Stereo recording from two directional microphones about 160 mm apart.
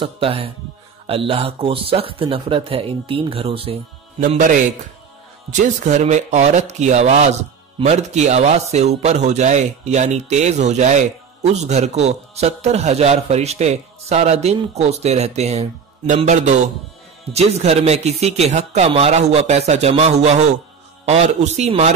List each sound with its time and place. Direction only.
0.0 s speech: 35° right (ahead or behind)
4.3 s speech: 50° right (ahead or behind)